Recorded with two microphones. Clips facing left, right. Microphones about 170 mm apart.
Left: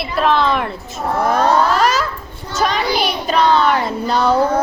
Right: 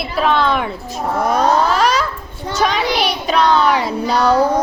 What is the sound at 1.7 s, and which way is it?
Babbling, centre (ahead or behind).